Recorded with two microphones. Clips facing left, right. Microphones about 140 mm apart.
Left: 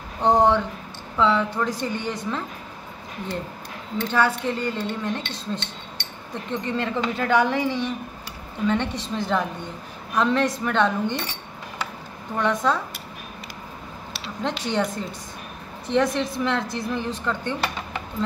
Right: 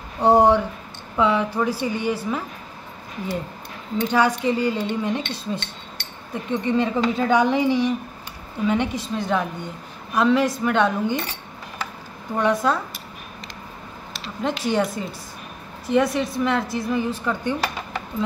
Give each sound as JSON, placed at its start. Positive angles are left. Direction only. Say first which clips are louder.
{"t": 0.2, "sound": "speech", "louder": "right 3 dB", "side_deg": -10}
{"t": 4.0, "sound": "speech", "louder": "right 3 dB", "side_deg": -15}
{"t": 12.4, "sound": "speech", "louder": "right 2 dB", "side_deg": -10}
{"t": 14.2, "sound": "speech", "louder": "right 3 dB", "side_deg": 0}